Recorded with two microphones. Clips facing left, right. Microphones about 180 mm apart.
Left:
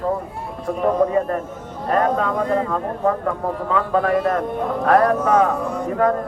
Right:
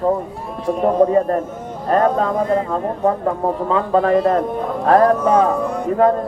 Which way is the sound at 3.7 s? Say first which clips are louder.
Right 3 dB; 30° right (ahead or behind).